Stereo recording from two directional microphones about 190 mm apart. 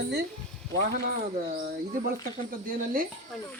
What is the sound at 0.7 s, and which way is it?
Speech, 55° right (ahead or behind).